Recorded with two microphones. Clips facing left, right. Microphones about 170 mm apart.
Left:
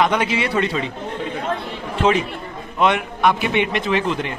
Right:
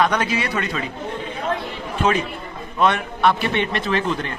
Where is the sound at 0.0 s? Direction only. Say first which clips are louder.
Left 1 dB; 20° left (ahead or behind).